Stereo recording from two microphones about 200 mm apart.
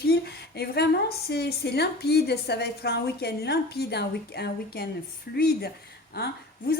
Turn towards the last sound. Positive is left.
turn(degrees=55)  # may be behind; listen again after turning